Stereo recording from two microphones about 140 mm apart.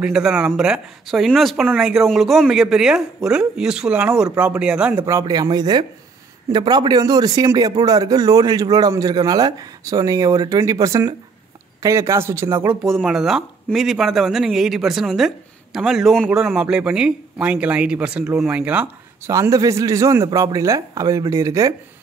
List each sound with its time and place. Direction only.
0.0 s speech: 5° right (ahead or behind)
5.0 s speech: 25° right (ahead or behind)
12.8 s speech: centre (ahead or behind)
19.3 s speech: 25° right (ahead or behind)